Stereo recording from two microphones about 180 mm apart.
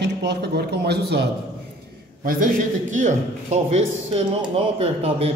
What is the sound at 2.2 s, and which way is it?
A man's voice, 45° right (ahead or behind).